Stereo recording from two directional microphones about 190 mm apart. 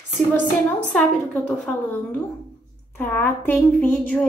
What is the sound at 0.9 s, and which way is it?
Speech, 5° left (ahead or behind).